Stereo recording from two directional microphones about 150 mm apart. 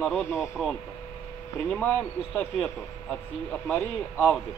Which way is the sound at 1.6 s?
15° left (ahead or behind).